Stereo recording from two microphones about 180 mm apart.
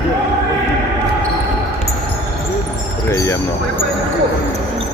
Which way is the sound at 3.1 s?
15° left (ahead or behind).